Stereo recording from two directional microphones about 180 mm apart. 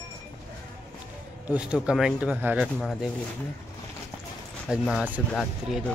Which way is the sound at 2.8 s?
Centre (ahead or behind).